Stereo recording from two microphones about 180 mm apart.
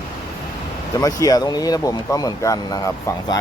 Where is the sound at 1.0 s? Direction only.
20° left (ahead or behind).